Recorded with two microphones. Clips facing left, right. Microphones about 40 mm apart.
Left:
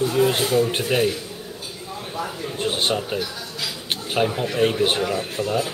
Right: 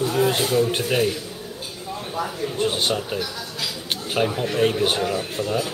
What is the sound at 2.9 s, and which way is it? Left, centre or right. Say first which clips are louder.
Speech: left 1 dB; centre.